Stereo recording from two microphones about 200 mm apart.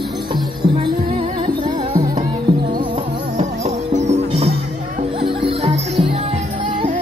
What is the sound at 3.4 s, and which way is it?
Music, 35° right (ahead or behind).